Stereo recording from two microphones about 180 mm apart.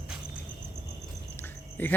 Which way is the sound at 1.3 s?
10° left (ahead or behind).